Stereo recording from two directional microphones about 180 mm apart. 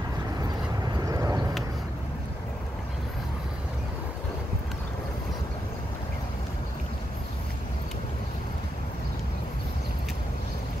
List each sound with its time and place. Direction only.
1.0 s vehicle: 20° right (ahead or behind)